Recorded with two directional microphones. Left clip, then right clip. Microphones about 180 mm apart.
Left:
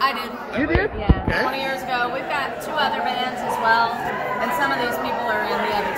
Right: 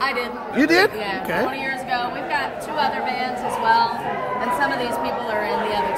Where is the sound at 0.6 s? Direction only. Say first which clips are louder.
Right 5 dB; 75° right (ahead or behind).